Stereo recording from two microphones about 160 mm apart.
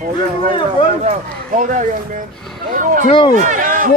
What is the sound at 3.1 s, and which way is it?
Speech, 30° left (ahead or behind).